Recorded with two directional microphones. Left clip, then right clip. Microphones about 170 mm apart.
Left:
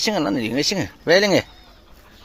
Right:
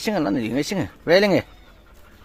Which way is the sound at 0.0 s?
15° right (ahead or behind).